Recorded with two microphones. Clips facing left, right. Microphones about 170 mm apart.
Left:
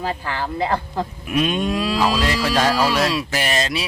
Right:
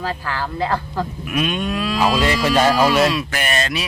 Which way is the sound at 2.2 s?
Centre (ahead or behind).